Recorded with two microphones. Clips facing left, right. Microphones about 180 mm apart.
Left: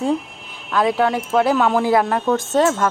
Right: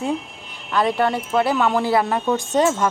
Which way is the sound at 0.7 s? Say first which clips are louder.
Left 2 dB; 10° left (ahead or behind).